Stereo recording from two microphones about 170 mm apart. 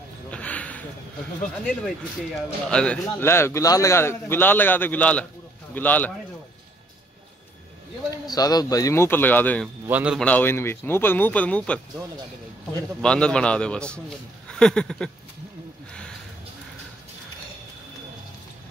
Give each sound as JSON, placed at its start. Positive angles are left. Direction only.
{"t": 0.3, "sound": "a sound", "side_deg": 10}
{"t": 1.4, "sound": "a man's voice", "side_deg": 5}
{"t": 8.1, "sound": "a man's voice", "side_deg": 20}
{"t": 9.8, "sound": "a man's voice", "side_deg": -5}
{"t": 10.2, "sound": "a man's voice", "side_deg": 10}
{"t": 13.0, "sound": "a man's voice", "side_deg": 5}
{"t": 14.5, "sound": "a sound", "side_deg": 5}